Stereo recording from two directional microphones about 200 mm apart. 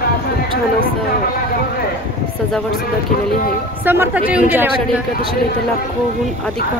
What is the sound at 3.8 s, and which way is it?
Speech, 10° right (ahead or behind).